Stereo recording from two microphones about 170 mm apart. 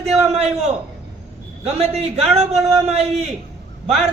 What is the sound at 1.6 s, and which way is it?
A man's voice, 35° right (ahead or behind).